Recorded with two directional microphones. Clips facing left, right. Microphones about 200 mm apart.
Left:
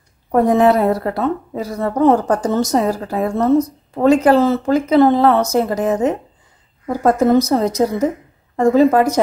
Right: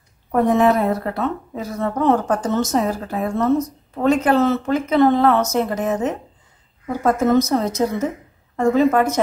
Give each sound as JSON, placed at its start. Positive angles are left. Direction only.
{"t": 0.3, "sound": "a woman's voice", "side_deg": 35}